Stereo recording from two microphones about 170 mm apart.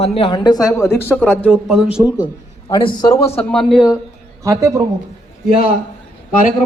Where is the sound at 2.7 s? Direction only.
25° left (ahead or behind).